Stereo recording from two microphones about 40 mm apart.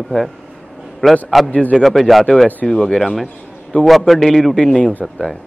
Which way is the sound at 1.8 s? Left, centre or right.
Centre.